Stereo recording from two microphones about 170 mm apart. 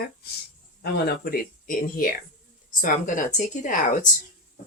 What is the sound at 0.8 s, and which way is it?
Speech, 70° left (ahead or behind).